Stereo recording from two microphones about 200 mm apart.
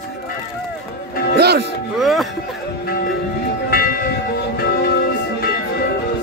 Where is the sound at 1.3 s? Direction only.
55° right (ahead or behind).